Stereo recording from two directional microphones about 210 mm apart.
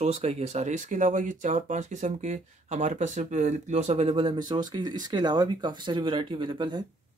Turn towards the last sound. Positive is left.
turn(degrees=-20)  # may be behind; listen again after turning